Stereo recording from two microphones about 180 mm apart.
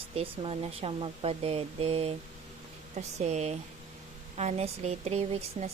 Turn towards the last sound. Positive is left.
turn(degrees=-40)  # may be behind; listen again after turning